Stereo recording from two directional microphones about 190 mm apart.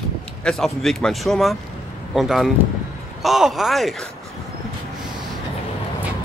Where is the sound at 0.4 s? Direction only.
5° left (ahead or behind).